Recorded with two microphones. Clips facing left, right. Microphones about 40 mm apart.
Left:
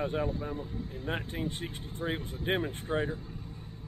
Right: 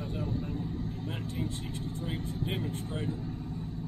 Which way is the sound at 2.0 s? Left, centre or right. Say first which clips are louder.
Left 5 dB; left.